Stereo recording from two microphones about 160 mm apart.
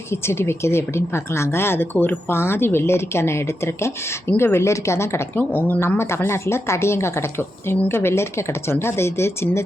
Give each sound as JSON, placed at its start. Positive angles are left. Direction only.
{"t": 0.1, "sound": "speech", "side_deg": 15}